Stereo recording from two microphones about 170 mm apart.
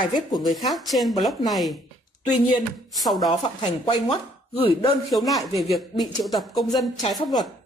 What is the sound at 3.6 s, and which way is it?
Speech, 25° left (ahead or behind).